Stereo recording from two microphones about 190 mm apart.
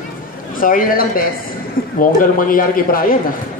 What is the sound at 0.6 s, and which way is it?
A man's voice, 45° left (ahead or behind).